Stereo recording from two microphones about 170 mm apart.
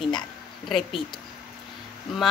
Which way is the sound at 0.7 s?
Centre (ahead or behind).